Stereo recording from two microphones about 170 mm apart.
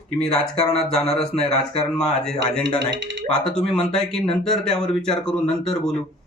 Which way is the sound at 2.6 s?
90° right.